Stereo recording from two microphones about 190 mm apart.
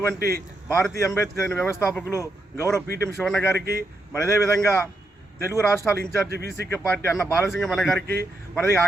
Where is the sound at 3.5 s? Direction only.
55° right (ahead or behind).